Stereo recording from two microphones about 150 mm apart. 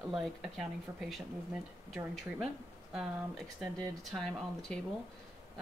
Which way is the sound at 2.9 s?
Centre (ahead or behind).